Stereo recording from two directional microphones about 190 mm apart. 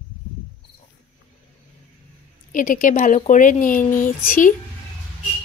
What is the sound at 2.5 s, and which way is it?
A woman's voice, 45° left (ahead or behind).